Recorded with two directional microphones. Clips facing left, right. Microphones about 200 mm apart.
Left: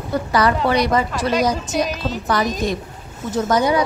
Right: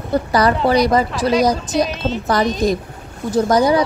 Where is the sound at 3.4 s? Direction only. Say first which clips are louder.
Right 3 dB; 35° right (ahead or behind).